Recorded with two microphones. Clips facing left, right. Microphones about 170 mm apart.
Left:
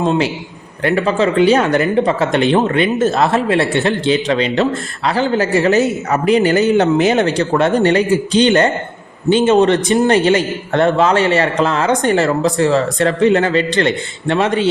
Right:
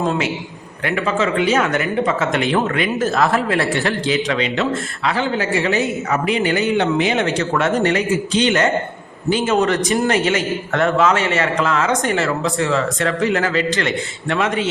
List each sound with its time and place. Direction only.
0.0 s speech: 30° left (ahead or behind)